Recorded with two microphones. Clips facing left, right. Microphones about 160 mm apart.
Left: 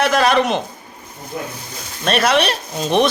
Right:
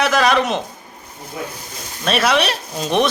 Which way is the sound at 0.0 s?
Centre (ahead or behind).